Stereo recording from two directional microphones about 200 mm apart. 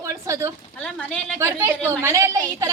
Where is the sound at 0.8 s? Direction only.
5° left (ahead or behind).